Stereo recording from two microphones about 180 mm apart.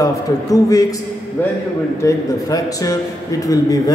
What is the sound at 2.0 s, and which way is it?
Speech, 20° left (ahead or behind).